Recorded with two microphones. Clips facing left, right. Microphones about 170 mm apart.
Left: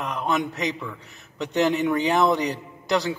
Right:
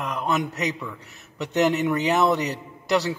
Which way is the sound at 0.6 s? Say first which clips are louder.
Even; 5° right (ahead or behind).